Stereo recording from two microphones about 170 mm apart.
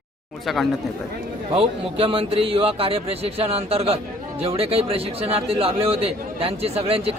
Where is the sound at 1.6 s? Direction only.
35° right (ahead or behind).